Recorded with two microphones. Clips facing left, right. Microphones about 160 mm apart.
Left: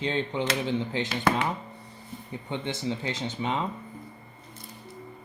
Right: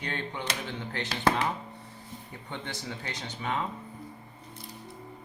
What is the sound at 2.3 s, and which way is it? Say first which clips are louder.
Speech: left 7 dB; 20° left (ahead or behind).